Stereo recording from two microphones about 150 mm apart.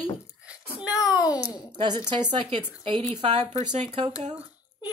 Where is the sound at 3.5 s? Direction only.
45° right (ahead or behind).